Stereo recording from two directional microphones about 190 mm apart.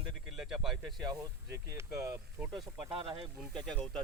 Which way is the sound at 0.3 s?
5° right (ahead or behind).